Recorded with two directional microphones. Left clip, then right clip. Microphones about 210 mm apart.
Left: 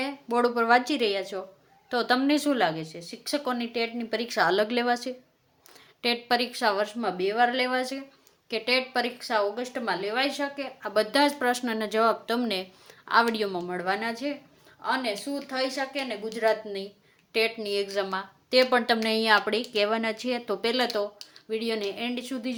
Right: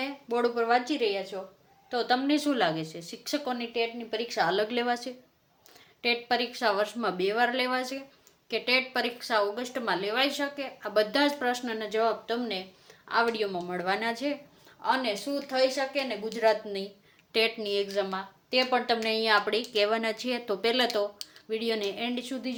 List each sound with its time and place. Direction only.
0.0 s a woman's voice: 30° left (ahead or behind); by 3.3 s 10° left (ahead or behind)
3.3 s a woman's voice: 25° left (ahead or behind)
13.7 s a woman's voice: 5° left (ahead or behind)